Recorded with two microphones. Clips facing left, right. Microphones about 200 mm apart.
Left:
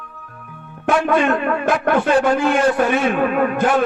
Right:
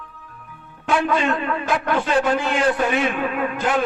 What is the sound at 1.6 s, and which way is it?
A man's voice, 55° left (ahead or behind).